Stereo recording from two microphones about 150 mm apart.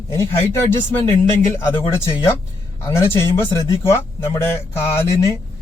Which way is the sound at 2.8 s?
20° left (ahead or behind).